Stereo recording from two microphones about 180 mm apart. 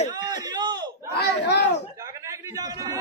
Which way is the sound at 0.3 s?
25° right (ahead or behind).